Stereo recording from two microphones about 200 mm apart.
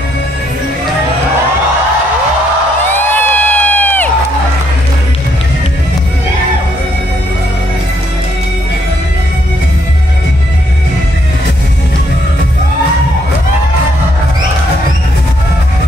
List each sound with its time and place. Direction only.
2.9 s crowd: 10° left (ahead or behind)